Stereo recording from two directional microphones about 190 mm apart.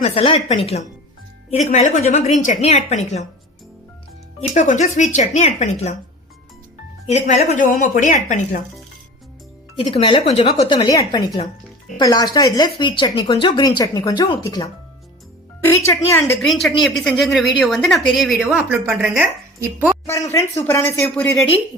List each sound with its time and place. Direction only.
0.0 s a woman's voice: 30° left (ahead or behind)
4.4 s a woman's voice: 40° left (ahead or behind)
7.1 s a woman's voice: 40° left (ahead or behind)
9.7 s speech: 30° left (ahead or behind); by 16.2 s 15° left (ahead or behind)
16.4 s a woman's voice: centre (ahead or behind)
20.6 s speech: 10° left (ahead or behind)